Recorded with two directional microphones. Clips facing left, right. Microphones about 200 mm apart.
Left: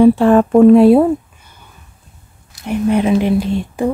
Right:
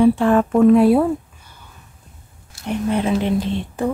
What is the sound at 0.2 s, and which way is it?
Speech, 35° left (ahead or behind).